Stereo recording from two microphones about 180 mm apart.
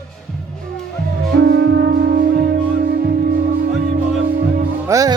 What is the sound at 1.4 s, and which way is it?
Music, 80° right.